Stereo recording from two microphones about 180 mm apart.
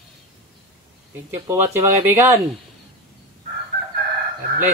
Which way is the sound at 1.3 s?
15° right (ahead or behind).